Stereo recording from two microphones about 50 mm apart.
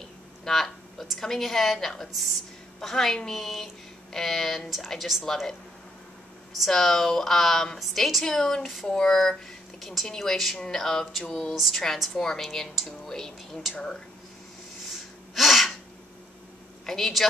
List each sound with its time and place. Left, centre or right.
0.5 s a sound: centre
1.2 s a woman's voice: centre
6.7 s a woman's voice: centre
13.1 s a sound: centre
13.7 s a woman's voice: centre
15.3 s sneeze: centre
16.8 s a woman's voice: centre